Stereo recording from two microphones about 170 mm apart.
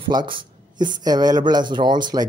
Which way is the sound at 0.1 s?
25° right (ahead or behind).